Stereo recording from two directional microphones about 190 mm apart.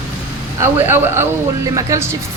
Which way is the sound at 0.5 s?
10° right (ahead or behind).